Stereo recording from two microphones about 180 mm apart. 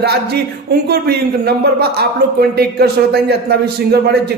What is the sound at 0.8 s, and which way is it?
A man's voice, 60° right (ahead or behind).